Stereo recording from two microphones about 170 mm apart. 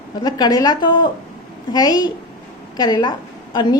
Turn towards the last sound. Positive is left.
turn(degrees=25)  # may be behind; listen again after turning